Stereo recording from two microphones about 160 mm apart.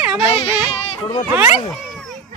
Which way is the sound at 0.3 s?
35° left (ahead or behind).